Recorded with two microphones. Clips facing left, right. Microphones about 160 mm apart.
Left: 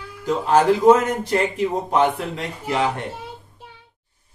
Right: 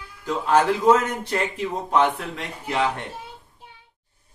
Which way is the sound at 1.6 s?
30° left (ahead or behind).